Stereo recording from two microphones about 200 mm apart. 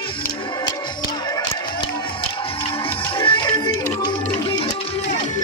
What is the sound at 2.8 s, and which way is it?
Music, 25° left (ahead or behind).